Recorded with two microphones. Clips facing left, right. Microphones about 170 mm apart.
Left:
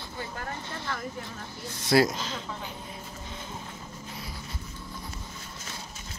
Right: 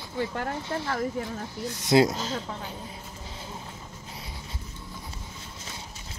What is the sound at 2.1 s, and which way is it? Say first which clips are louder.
Speech: right 4 dB; 40° right (ahead or behind).